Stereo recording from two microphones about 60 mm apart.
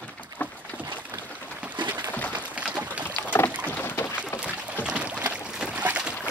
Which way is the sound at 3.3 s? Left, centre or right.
Left.